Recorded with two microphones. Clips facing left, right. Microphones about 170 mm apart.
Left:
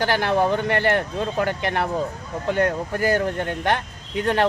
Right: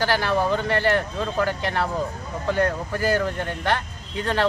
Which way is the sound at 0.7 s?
55° left (ahead or behind).